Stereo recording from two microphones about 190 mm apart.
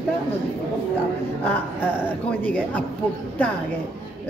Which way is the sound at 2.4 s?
5° left (ahead or behind).